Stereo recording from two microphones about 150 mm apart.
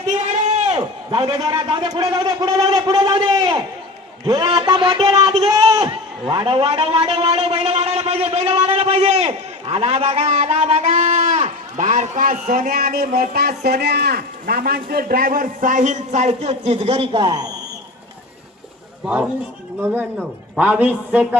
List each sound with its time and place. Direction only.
0.1 s a sound: 50° right (ahead or behind)
1.1 s a man's voice: 25° right (ahead or behind)
19.8 s a man's voice: 15° right (ahead or behind)